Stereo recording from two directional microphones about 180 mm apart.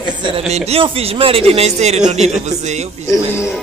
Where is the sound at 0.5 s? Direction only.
35° right (ahead or behind).